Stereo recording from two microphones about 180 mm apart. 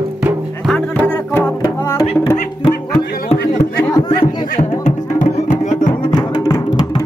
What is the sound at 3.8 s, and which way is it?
Chatter, 20° left (ahead or behind).